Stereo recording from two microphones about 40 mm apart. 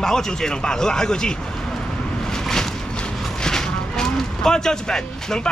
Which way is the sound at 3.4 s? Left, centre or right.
Centre.